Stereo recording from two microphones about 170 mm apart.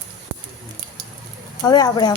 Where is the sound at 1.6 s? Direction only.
25° left (ahead or behind).